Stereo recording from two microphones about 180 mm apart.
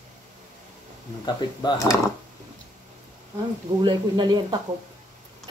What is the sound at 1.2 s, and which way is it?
Speech, 25° left (ahead or behind).